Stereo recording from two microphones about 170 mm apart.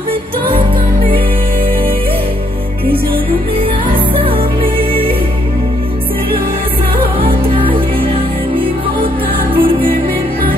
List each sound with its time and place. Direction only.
7.2 s music: 30° right (ahead or behind)
9.6 s music: 30° right (ahead or behind)